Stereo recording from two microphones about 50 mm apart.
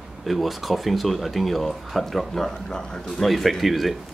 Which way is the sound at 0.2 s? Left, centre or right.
Centre.